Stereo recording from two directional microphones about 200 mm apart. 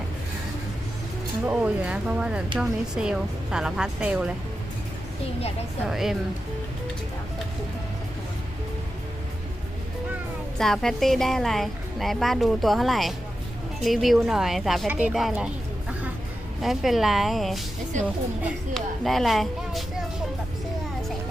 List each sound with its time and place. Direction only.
1.5 s a woman's voice: 5° right (ahead or behind)
5.8 s a woman's voice: centre (ahead or behind)
10.6 s a woman's voice: centre (ahead or behind)
16.6 s a woman's voice: centre (ahead or behind)
17.9 s a woman's voice: 35° right (ahead or behind)
18.7 s speech: centre (ahead or behind)